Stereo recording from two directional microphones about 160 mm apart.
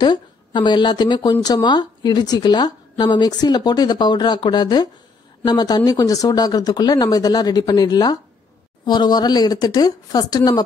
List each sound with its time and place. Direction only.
0.0 s a woman's voice: 30° left (ahead or behind)